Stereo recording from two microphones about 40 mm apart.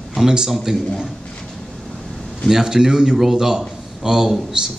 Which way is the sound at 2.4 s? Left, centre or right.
Centre.